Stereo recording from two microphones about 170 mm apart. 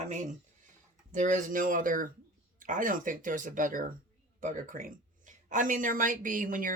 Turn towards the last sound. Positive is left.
turn(degrees=-55)  # may be behind; listen again after turning